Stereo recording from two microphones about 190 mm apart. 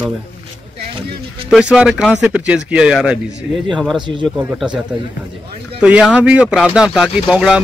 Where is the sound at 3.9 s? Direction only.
25° right (ahead or behind).